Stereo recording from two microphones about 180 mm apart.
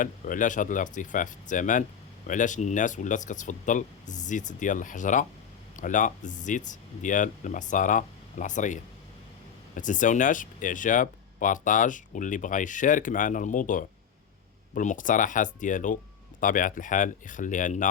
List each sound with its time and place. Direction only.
0.0 s speech: 45° left (ahead or behind)